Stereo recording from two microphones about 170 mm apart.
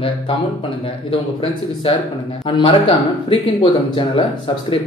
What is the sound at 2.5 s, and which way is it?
Speech, 30° left (ahead or behind).